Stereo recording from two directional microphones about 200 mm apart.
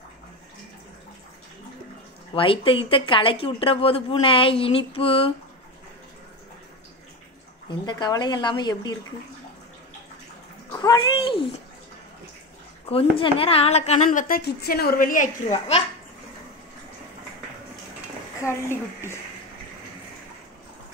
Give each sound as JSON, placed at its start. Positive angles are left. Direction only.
{"t": 2.3, "sound": "speech", "side_deg": 25}
{"t": 7.8, "sound": "speech", "side_deg": 20}
{"t": 10.7, "sound": "a sound", "side_deg": 20}
{"t": 12.9, "sound": "a woman's voice", "side_deg": 30}
{"t": 18.4, "sound": "a woman's voice", "side_deg": 15}